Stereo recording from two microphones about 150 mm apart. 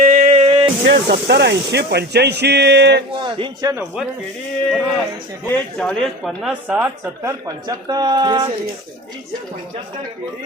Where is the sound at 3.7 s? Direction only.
5° right (ahead or behind).